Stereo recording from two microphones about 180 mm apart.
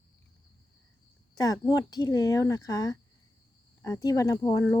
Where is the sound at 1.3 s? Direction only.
20° left (ahead or behind).